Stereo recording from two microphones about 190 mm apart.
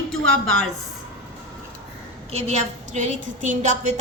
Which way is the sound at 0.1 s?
5° left (ahead or behind).